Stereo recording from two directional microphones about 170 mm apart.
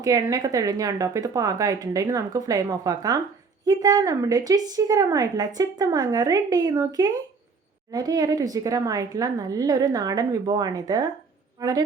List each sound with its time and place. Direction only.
0.0 s a woman's voice: 20° right (ahead or behind)